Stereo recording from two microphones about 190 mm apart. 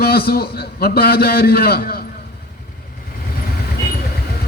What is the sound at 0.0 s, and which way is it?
A man's voice, 55° left (ahead or behind).